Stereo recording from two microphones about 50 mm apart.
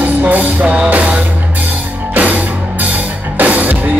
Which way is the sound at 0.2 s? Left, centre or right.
Right.